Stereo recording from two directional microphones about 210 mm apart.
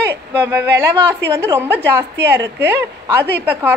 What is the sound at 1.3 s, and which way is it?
A woman's voice, 10° right (ahead or behind).